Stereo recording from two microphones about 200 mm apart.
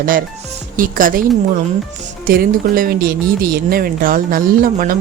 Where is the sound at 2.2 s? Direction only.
45° right (ahead or behind).